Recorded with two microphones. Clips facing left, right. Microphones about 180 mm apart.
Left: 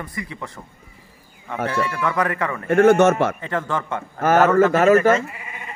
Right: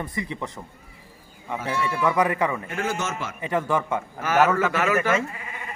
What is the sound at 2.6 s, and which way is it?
Speech, 60° left (ahead or behind).